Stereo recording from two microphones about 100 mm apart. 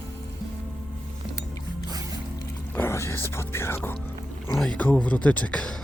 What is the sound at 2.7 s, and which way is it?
Whispering, 25° left (ahead or behind).